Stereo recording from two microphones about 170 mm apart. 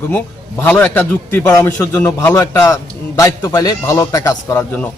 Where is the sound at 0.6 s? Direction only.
10° left (ahead or behind).